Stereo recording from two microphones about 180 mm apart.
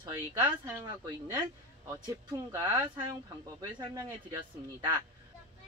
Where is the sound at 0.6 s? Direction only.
20° right (ahead or behind).